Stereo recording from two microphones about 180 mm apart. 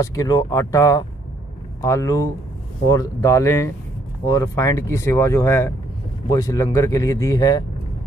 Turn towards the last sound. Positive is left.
turn(degrees=20)  # may be behind; listen again after turning